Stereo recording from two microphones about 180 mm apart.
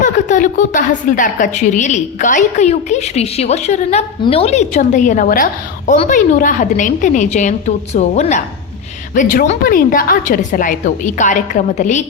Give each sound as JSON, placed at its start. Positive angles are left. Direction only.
{"t": 0.0, "sound": "a woman's voice", "side_deg": 45}